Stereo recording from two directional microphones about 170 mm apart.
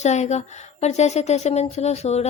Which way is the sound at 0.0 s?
40° left (ahead or behind).